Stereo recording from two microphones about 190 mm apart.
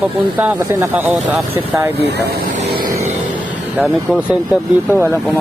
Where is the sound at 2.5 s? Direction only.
45° right (ahead or behind).